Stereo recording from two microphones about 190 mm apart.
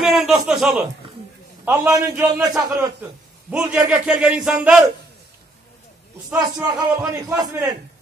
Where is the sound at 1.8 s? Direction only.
15° right (ahead or behind).